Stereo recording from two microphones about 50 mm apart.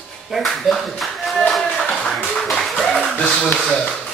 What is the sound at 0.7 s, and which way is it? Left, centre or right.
Clapping, centre.